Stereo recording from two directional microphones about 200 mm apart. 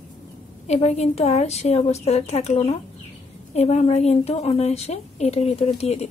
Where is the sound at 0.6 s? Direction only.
35° left (ahead or behind).